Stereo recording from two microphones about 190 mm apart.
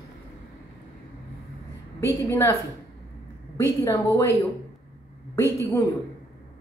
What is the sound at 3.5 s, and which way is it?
Speech, 15° left (ahead or behind).